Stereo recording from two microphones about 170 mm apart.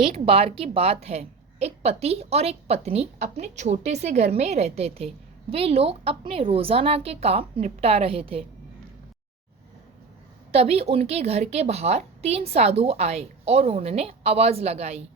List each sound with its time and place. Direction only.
0.0 s a woman's voice: 35° right (ahead or behind)
10.5 s a woman's voice: 35° right (ahead or behind)